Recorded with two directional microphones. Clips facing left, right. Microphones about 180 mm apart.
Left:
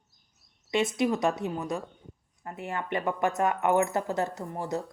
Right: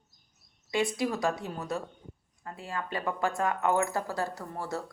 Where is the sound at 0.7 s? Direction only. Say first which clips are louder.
Left 3 dB; 20° left (ahead or behind).